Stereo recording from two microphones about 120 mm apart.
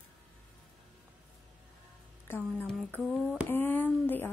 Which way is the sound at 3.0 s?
5° right (ahead or behind).